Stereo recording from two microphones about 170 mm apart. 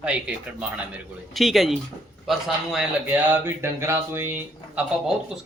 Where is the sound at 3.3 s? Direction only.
15° right (ahead or behind).